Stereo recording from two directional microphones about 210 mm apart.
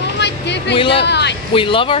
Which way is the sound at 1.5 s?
25° left (ahead or behind).